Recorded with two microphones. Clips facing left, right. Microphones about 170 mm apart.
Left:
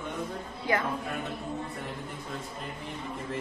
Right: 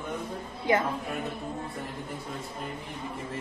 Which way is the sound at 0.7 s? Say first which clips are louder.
Right 4 dB; 20° right (ahead or behind).